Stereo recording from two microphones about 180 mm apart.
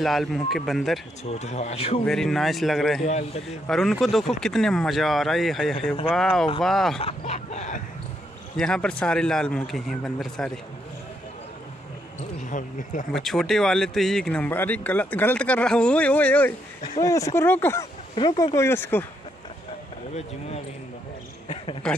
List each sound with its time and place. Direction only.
0.0 s speech: centre (ahead or behind)
1.3 s a sound: 40° left (ahead or behind)
2.0 s speech: centre (ahead or behind)
3.0 s a sound: 35° left (ahead or behind)
3.6 s speech: centre (ahead or behind)
7.0 s a sound: 35° left (ahead or behind)
8.5 s speech: 5° left (ahead or behind)
12.4 s speech: 45° left (ahead or behind)
13.1 s speech: centre (ahead or behind)
18.1 s speech: 25° left (ahead or behind)
21.8 s speech: 5° left (ahead or behind)